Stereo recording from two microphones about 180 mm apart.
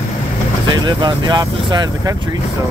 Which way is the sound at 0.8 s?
25° right (ahead or behind).